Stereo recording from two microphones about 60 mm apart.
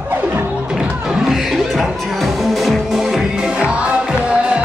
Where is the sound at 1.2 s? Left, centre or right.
Centre.